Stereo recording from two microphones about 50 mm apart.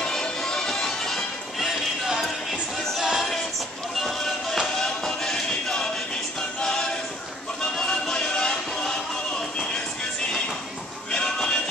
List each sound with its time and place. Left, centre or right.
0.0 s music: centre
3.0 s music: centre
4.0 s music: centre
6.6 s choir: centre
7.8 s music: centre
11.1 s music: centre